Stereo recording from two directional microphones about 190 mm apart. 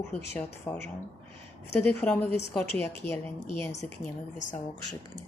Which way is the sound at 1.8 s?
10° left (ahead or behind).